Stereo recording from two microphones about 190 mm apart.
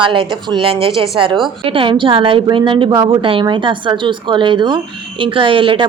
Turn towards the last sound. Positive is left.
turn(degrees=-25)  # may be behind; listen again after turning